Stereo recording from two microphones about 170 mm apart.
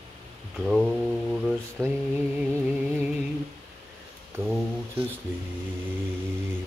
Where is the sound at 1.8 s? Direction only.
5° right (ahead or behind).